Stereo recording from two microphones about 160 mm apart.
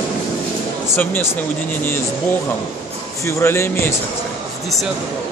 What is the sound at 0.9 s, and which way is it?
Speech, 15° left (ahead or behind).